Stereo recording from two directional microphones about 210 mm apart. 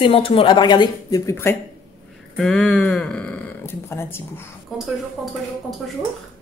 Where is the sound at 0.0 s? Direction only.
25° left (ahead or behind).